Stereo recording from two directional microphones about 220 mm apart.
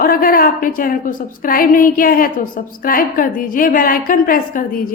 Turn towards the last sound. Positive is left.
turn(degrees=40)  # may be behind; listen again after turning